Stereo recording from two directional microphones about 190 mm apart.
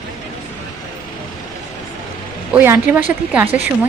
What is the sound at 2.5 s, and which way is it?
A woman's voice, 10° right (ahead or behind).